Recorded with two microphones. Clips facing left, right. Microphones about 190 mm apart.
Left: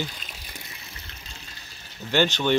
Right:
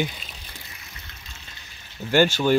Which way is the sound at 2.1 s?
10° right (ahead or behind).